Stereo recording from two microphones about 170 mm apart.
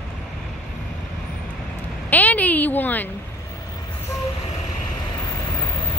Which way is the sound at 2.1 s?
10° left (ahead or behind).